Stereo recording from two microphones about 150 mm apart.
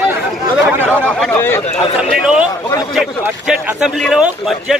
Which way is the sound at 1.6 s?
35° left (ahead or behind).